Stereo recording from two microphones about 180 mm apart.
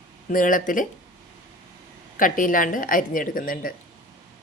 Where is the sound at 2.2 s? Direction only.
50° left (ahead or behind).